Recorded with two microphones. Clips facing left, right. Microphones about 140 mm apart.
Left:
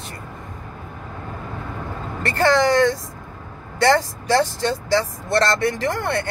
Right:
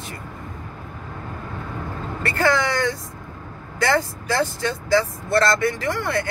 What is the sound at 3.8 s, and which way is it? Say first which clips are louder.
Speech: left 4 dB; 30° left (ahead or behind).